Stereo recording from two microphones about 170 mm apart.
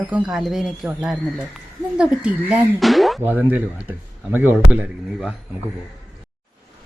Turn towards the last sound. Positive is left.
turn(degrees=-5)  # may be behind; listen again after turning